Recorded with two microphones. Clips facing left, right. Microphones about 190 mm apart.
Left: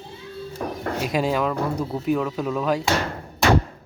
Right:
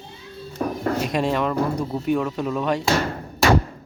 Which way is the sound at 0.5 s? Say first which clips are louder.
Right 5 dB; centre (ahead or behind).